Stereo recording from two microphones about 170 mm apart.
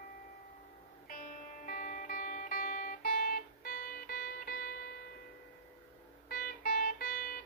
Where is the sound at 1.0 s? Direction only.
55° left (ahead or behind).